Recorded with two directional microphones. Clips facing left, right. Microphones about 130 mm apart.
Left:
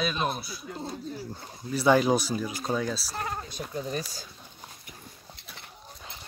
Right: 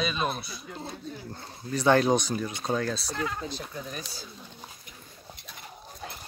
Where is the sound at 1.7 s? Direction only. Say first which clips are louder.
Even; 5° left (ahead or behind).